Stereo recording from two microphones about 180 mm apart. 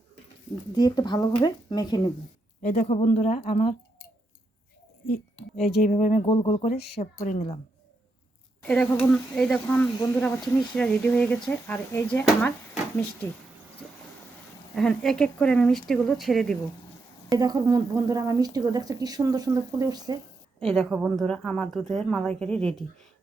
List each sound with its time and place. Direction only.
0.8 s speech: 20° left (ahead or behind)
2.6 s speech: 45° left (ahead or behind)
5.9 s speech: 45° left (ahead or behind)
8.6 s speech: 5° left (ahead or behind)
14.8 s speech: 5° left (ahead or behind)
17.3 s speech: 20° right (ahead or behind)
20.7 s speech: centre (ahead or behind)